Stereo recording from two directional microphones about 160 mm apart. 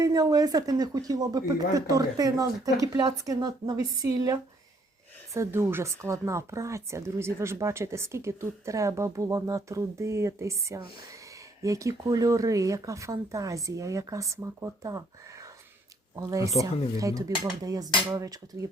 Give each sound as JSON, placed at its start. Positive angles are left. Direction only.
{"t": 0.0, "sound": "speech", "side_deg": -20}
{"t": 16.1, "sound": "speech", "side_deg": -20}